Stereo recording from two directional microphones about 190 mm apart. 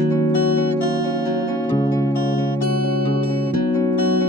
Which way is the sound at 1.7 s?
15° left (ahead or behind).